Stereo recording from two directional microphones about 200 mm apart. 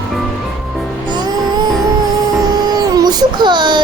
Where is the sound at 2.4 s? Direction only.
20° right (ahead or behind).